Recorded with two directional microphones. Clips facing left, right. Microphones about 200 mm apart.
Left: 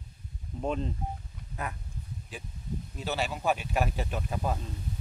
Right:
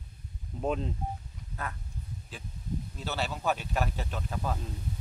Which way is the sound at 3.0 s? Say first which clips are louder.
Left 3 dB; 10° left (ahead or behind).